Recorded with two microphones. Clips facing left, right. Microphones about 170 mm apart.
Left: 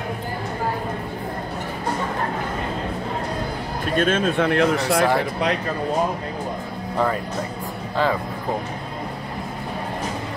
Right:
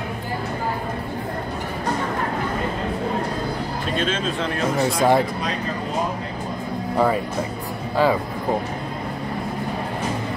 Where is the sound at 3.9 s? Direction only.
50° left (ahead or behind).